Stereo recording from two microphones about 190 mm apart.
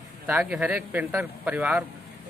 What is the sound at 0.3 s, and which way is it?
A man's voice, 5° right (ahead or behind).